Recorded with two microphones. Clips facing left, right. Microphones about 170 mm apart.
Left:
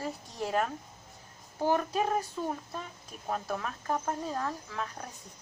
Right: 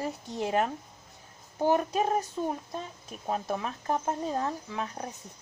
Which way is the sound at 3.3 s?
20° right (ahead or behind).